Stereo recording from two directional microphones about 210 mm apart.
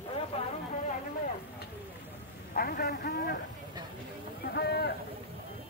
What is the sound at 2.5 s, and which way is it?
Speech, 45° left (ahead or behind).